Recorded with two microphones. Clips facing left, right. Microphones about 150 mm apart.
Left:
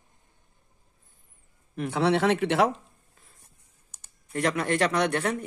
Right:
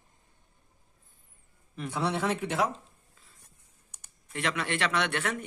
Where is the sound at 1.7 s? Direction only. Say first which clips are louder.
Left 7 dB; 65° left (ahead or behind).